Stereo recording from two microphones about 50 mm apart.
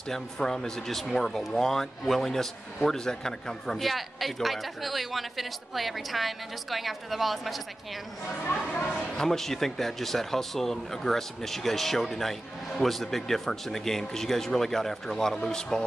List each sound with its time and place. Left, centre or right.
0.1 s a man's voice: centre
8.5 s speech: left
9.1 s speech: centre